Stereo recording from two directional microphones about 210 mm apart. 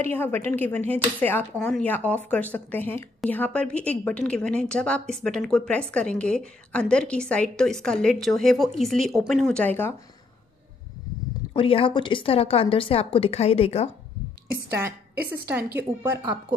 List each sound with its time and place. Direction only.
0.0 s speech: 10° left (ahead or behind)
11.5 s a woman's voice: 25° left (ahead or behind)
15.5 s a woman's voice: 10° right (ahead or behind)